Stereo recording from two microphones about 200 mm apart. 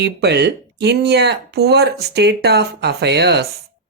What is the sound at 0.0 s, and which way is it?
Speech, 55° right (ahead or behind).